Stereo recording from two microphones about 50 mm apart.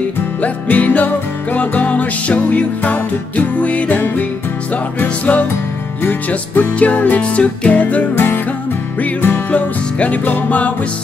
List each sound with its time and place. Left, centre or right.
0.4 s music: left
6.9 s music: left